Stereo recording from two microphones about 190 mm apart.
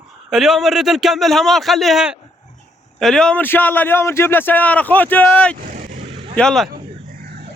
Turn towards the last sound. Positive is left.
turn(degrees=5)  # may be behind; listen again after turning